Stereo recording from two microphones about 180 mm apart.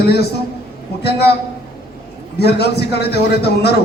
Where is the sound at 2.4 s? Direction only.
65° left (ahead or behind).